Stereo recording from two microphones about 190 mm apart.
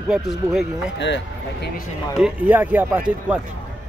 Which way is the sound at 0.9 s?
70° left (ahead or behind).